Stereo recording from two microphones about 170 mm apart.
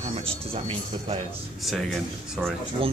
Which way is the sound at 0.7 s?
35° right (ahead or behind).